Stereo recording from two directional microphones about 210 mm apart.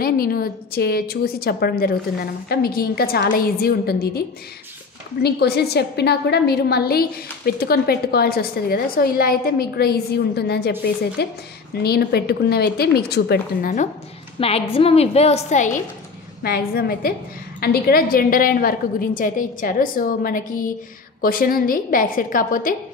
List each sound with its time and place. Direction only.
0.0 s a woman's voice: 45° left (ahead or behind)
5.2 s a woman's voice: 50° left (ahead or behind)
14.4 s a woman's voice: 25° left (ahead or behind)
16.4 s a woman's voice: 45° left (ahead or behind)